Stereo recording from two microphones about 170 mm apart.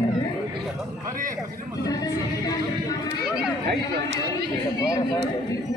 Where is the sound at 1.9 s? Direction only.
20° left (ahead or behind).